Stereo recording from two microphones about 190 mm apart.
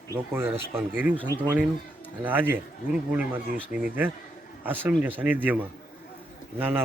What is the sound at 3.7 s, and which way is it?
Speech, 5° right (ahead or behind).